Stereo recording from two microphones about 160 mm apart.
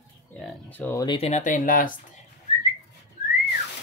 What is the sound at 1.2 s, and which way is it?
Speech, 45° left (ahead or behind).